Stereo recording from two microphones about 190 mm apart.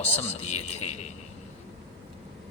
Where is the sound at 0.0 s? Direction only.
35° left (ahead or behind).